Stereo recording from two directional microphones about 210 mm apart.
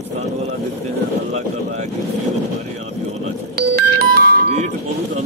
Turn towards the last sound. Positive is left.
turn(degrees=-45)  # may be behind; listen again after turning